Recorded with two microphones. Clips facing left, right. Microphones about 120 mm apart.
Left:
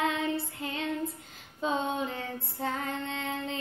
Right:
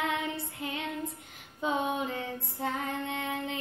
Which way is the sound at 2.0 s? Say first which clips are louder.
Even; 20° right (ahead or behind).